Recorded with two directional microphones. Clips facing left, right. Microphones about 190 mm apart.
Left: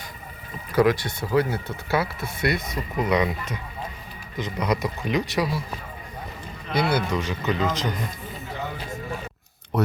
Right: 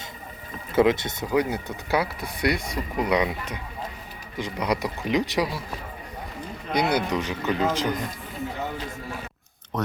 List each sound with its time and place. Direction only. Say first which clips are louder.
0.7 s speech: even; 20° right (ahead or behind)
6.7 s speech: even; 15° right (ahead or behind)
9.7 s speech: left 5 dB; 10° left (ahead or behind)